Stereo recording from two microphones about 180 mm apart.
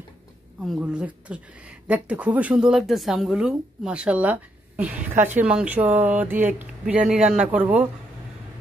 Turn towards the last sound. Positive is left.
turn(degrees=-10)  # may be behind; listen again after turning